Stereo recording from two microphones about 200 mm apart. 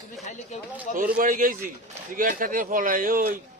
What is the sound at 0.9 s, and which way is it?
A man's voice, 45° right (ahead or behind).